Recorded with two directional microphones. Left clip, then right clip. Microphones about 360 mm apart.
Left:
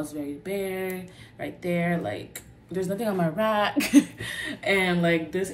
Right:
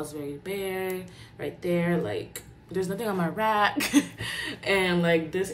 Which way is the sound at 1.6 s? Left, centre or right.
Right.